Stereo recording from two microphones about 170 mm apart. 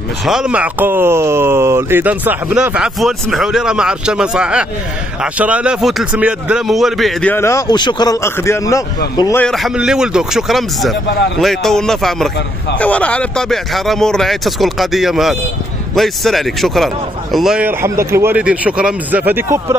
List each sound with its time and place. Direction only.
0.2 s a man's voice: 5° right (ahead or behind); by 9.4 s 25° left (ahead or behind)
9.4 s speech: centre (ahead or behind)
11.1 s speech: 70° left (ahead or behind)
11.3 s speech: centre (ahead or behind)